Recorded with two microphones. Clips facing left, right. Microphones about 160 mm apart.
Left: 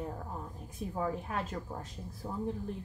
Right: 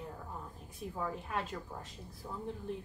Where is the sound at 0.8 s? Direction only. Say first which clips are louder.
Left 4 dB; 45° left (ahead or behind).